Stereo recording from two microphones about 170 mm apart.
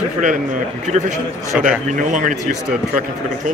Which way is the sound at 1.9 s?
50° right (ahead or behind).